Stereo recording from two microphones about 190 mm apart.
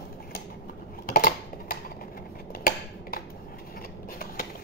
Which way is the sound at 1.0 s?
50° left (ahead or behind).